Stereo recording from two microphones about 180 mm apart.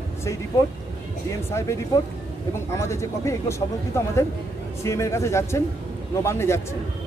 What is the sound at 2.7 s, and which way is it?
Speech, 15° left (ahead or behind).